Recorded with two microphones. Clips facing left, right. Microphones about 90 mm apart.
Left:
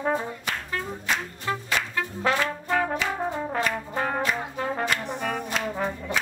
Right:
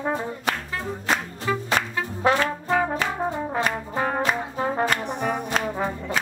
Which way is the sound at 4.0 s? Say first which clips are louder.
Right 3 dB; 15° right (ahead or behind).